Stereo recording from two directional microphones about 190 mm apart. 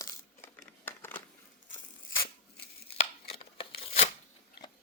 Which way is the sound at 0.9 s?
10° left (ahead or behind).